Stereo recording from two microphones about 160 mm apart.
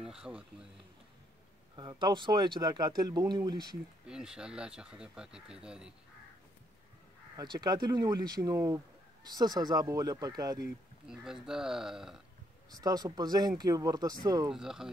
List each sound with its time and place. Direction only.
0.0 s speech: 5° right (ahead or behind)
1.8 s speech: 25° right (ahead or behind)
4.1 s speech: 5° right (ahead or behind)
7.3 s speech: 25° right (ahead or behind)
11.1 s speech: 5° right (ahead or behind)
12.8 s speech: 25° right (ahead or behind)
14.5 s speech: 5° right (ahead or behind)